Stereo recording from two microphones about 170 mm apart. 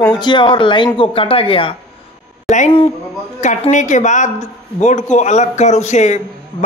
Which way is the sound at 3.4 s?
45° left (ahead or behind).